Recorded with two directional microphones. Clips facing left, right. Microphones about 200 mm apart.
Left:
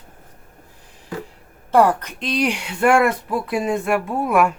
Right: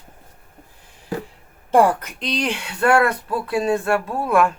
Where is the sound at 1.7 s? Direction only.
10° right (ahead or behind); by 4.5 s 10° left (ahead or behind).